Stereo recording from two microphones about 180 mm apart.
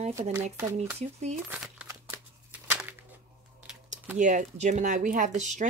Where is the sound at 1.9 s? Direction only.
10° right (ahead or behind).